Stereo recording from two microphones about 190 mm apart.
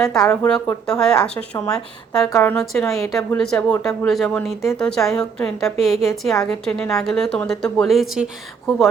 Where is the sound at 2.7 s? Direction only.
Centre (ahead or behind).